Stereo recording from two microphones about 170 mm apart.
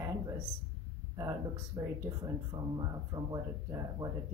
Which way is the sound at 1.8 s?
25° right (ahead or behind).